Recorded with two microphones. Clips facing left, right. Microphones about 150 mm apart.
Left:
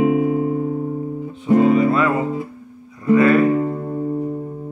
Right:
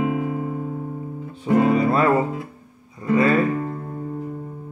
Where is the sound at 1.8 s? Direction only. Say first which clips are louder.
Left 2 dB; 40° right (ahead or behind).